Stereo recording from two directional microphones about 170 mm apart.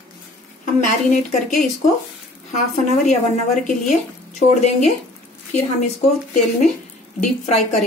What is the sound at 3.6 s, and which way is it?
Speech, 45° left (ahead or behind).